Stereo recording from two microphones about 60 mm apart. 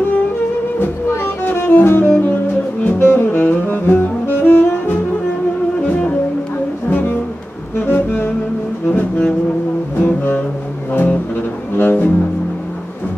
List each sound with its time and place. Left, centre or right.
1.2 s music: left
4.4 s saxophone: left
6.9 s music: left
7.7 s saxophone: left
8.8 s music: left
11.7 s double bass: left